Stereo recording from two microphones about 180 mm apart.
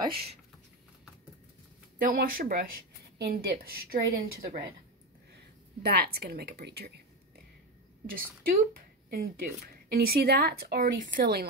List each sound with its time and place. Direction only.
0.0 s speech: 30° right (ahead or behind)
2.1 s speech: 50° right (ahead or behind)
5.8 s speech: 60° right (ahead or behind)
8.1 s speech: 55° right (ahead or behind)